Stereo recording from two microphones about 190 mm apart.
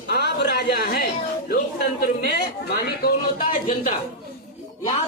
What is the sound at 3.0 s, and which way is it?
Speech, 45° left (ahead or behind).